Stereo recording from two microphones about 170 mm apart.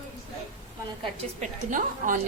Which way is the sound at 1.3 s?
50° right (ahead or behind).